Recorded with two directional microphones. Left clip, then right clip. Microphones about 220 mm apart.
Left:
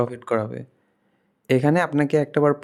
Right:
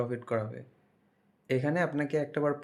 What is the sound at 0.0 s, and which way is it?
Speech, 45° left (ahead or behind).